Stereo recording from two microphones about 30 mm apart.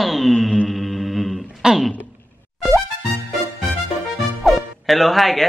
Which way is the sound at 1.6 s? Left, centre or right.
Right.